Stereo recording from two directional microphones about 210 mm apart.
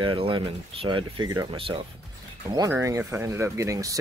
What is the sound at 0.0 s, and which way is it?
Speech, 25° right (ahead or behind).